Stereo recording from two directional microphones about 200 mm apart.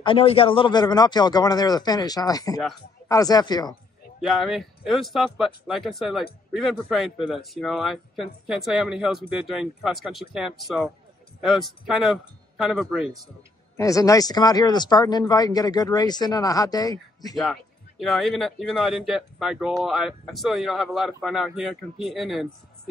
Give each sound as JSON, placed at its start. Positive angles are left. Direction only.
{"t": 0.0, "sound": "speech", "side_deg": 25}
{"t": 4.2, "sound": "speech", "side_deg": 0}
{"t": 13.7, "sound": "speech", "side_deg": 15}
{"t": 17.9, "sound": "speech", "side_deg": 0}